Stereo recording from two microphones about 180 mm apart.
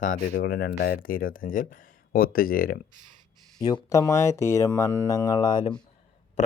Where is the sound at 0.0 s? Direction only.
45° left (ahead or behind).